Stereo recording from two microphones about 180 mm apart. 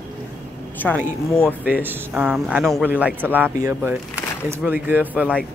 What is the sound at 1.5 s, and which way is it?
Speech, 10° right (ahead or behind).